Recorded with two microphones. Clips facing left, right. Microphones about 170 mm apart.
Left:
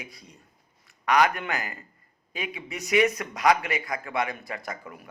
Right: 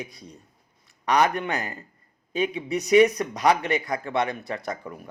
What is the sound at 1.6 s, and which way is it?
Speech, 35° right (ahead or behind).